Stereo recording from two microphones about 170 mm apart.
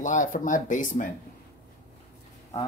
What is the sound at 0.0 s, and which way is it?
Speech, 50° left (ahead or behind).